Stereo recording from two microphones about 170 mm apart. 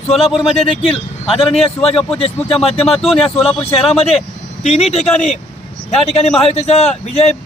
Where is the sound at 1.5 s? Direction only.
35° left (ahead or behind).